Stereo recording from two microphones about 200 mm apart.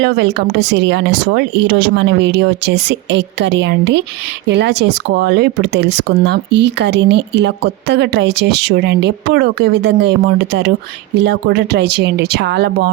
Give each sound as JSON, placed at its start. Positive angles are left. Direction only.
{"t": 0.0, "sound": "speech", "side_deg": -60}